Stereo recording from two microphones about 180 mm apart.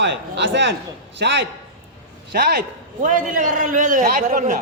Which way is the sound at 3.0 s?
50° right (ahead or behind).